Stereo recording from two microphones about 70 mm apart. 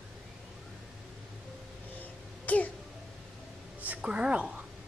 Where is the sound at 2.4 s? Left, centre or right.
Left.